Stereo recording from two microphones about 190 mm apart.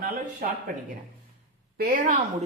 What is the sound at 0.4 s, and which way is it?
Speech, 50° right (ahead or behind).